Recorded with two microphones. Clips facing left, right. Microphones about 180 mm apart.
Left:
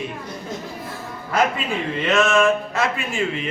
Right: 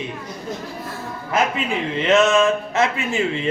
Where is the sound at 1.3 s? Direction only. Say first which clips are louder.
Even; 20° right (ahead or behind).